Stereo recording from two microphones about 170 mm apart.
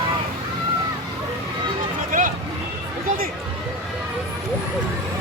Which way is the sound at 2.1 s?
50° right (ahead or behind).